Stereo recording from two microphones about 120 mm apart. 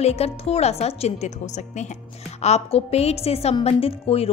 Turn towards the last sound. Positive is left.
turn(degrees=55)  # may be behind; listen again after turning